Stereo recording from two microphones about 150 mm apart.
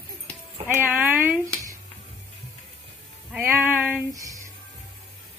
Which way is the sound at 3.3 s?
15° right (ahead or behind).